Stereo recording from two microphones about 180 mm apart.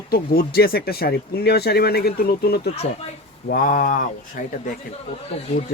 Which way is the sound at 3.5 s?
50° left (ahead or behind).